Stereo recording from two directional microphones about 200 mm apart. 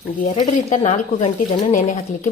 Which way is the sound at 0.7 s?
35° left (ahead or behind).